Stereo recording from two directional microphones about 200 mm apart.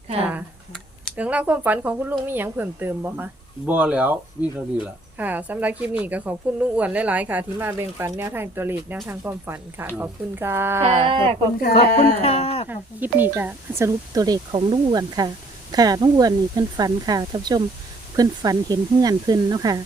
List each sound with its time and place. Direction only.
0.3 s speech: 5° right (ahead or behind)
11.0 s speech: 25° right (ahead or behind)
12.2 s a sound: 30° left (ahead or behind)
12.6 s speech: 10° right (ahead or behind)